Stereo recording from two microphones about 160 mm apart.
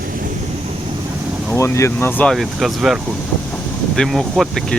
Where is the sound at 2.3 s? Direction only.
Centre (ahead or behind).